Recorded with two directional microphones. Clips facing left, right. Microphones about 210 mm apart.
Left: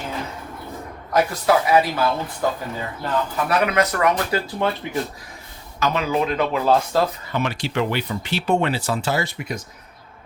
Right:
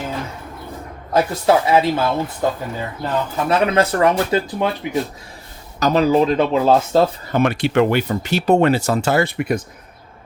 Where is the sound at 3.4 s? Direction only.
25° right (ahead or behind).